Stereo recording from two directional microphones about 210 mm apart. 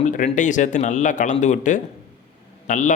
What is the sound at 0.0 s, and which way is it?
A man's voice, 35° left (ahead or behind).